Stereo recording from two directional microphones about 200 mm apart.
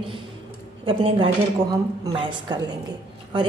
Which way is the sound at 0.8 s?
25° right (ahead or behind).